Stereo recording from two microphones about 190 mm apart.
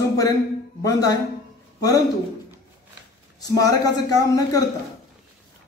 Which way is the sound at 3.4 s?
20° left (ahead or behind).